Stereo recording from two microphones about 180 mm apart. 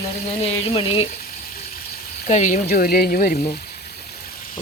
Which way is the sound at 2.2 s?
45° left (ahead or behind).